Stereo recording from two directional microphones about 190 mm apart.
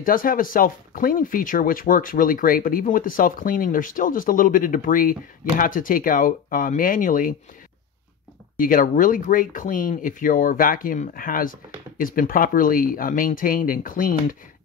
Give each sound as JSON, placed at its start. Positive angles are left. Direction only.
{"t": 0.0, "sound": "speech", "side_deg": 45}
{"t": 8.5, "sound": "speech", "side_deg": 45}